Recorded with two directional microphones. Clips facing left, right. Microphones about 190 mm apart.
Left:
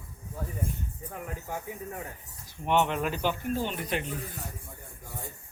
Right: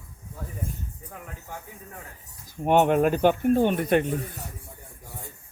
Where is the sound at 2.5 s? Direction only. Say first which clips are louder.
Right 7 dB; 45° right (ahead or behind).